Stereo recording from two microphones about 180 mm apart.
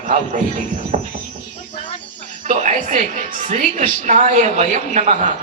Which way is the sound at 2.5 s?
45° right (ahead or behind).